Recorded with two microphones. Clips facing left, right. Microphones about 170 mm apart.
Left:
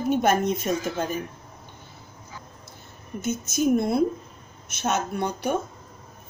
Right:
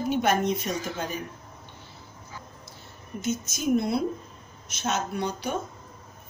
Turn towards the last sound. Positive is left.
turn(degrees=55)  # may be behind; listen again after turning